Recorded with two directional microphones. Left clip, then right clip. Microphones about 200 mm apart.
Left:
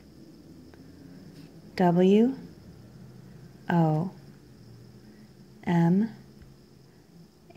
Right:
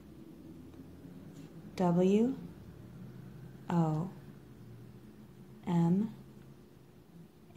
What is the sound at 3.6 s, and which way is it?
Speech, 45° left (ahead or behind).